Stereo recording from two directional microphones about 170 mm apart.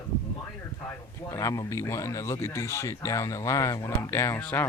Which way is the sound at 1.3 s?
20° left (ahead or behind).